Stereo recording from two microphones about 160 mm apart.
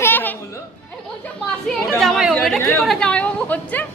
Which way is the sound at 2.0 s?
Centre (ahead or behind).